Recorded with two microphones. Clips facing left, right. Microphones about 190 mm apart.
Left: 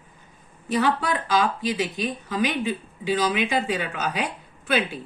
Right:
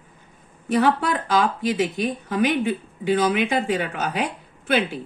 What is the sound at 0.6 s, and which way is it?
Speech, 60° right (ahead or behind).